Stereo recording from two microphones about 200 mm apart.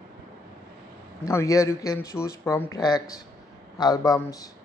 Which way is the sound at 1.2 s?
15° left (ahead or behind).